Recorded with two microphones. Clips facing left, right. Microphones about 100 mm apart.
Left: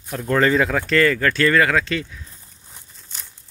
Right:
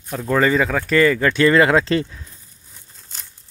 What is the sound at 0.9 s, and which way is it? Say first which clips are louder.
Speech: right 4 dB; 10° right (ahead or behind).